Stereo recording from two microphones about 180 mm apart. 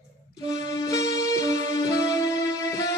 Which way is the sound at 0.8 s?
20° left (ahead or behind).